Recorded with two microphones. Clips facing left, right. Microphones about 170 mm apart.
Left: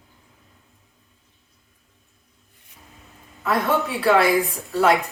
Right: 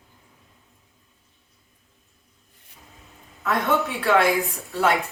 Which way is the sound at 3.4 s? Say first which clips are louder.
Left 1 dB; centre (ahead or behind).